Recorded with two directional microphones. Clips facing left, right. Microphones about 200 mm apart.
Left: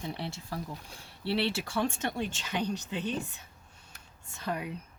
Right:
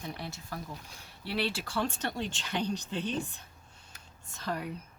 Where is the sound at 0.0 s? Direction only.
25° left (ahead or behind).